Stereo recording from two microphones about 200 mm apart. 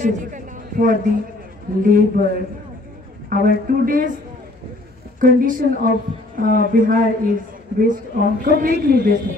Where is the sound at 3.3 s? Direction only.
45° right (ahead or behind).